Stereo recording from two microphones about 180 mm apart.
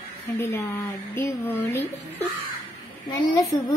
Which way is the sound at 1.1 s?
15° left (ahead or behind).